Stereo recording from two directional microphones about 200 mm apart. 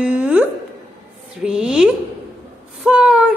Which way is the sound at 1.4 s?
5° right (ahead or behind).